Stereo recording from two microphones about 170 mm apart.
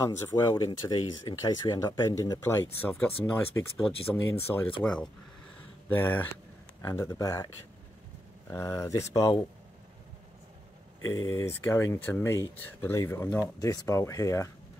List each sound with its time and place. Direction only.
0.0 s speech: 20° left (ahead or behind)
3.7 s speech: 5° left (ahead or behind); by 7.4 s 20° left (ahead or behind)
8.5 s speech: 15° left (ahead or behind)
11.1 s speech: 15° left (ahead or behind)